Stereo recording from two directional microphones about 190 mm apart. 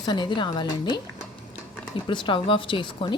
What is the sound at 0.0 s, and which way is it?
Speech, 25° left (ahead or behind).